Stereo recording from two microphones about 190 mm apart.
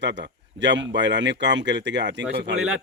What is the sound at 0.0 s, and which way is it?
Speech, 65° right (ahead or behind).